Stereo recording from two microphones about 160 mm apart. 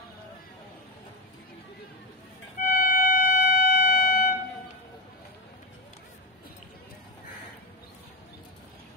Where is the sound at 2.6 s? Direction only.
60° left (ahead or behind).